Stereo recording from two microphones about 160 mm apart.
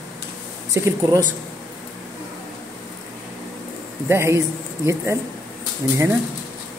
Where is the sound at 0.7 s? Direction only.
15° right (ahead or behind).